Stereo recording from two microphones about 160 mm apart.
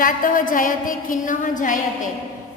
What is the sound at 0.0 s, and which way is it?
A woman's voice, 60° left (ahead or behind).